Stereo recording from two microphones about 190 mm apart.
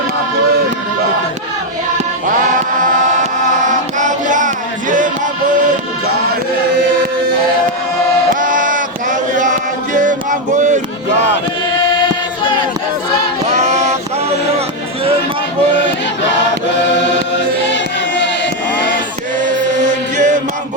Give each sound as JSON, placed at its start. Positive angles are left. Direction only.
{"t": 2.8, "sound": "music", "side_deg": -45}
{"t": 8.3, "sound": "chant", "side_deg": -45}
{"t": 13.5, "sound": "a sound", "side_deg": -35}
{"t": 20.1, "sound": "music", "side_deg": -40}